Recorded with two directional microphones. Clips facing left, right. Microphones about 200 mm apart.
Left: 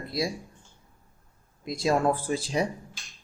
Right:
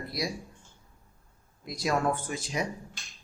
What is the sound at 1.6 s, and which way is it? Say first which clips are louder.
Speech: left 4 dB; 25° left (ahead or behind).